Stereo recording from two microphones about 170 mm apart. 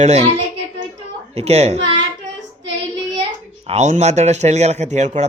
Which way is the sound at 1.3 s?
40° right (ahead or behind).